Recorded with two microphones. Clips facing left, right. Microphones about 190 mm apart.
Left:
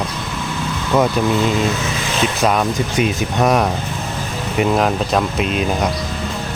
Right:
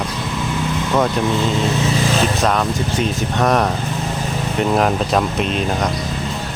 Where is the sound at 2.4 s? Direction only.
10° left (ahead or behind).